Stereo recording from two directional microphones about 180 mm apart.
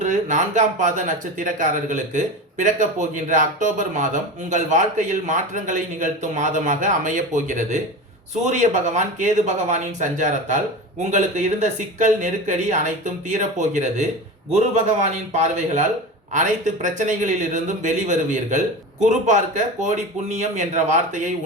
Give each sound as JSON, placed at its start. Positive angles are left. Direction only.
{"t": 0.0, "sound": "speech", "side_deg": -45}